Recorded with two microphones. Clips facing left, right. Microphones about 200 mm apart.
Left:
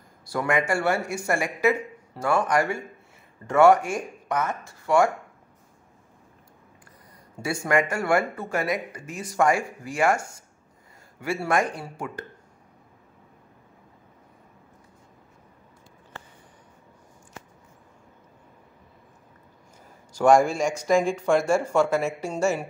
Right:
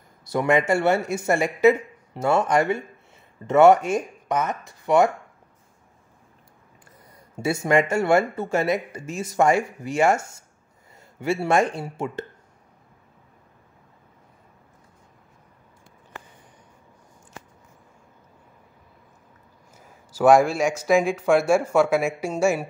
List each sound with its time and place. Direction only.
0.2 s speech: 20° right (ahead or behind)
7.6 s speech: 25° right (ahead or behind)
20.1 s speech: 5° right (ahead or behind)